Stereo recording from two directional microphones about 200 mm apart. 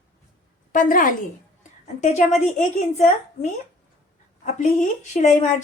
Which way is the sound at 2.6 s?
35° left (ahead or behind).